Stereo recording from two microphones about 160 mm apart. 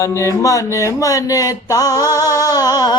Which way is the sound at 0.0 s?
20° left (ahead or behind).